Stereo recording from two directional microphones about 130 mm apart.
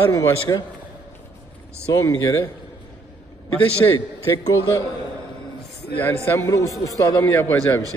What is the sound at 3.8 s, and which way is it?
Speech, 25° left (ahead or behind).